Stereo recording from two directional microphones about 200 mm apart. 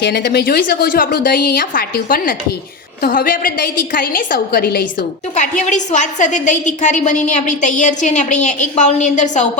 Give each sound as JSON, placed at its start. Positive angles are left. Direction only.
{"t": 0.0, "sound": "a woman's voice", "side_deg": 50}
{"t": 5.4, "sound": "a woman's voice", "side_deg": 40}